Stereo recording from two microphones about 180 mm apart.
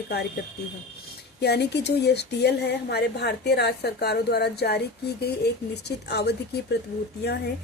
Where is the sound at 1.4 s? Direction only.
70° left (ahead or behind).